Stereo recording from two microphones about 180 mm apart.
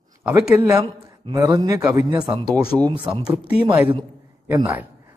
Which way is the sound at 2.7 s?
5° right (ahead or behind).